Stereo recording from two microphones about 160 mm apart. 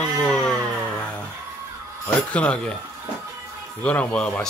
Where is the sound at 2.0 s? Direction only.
10° left (ahead or behind).